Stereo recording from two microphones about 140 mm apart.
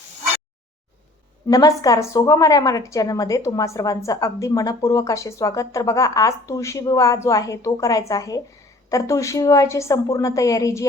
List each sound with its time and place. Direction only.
1.5 s a woman's voice: 25° left (ahead or behind)